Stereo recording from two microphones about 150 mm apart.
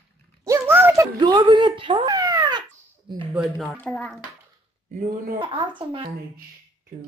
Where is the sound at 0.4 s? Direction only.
15° right (ahead or behind).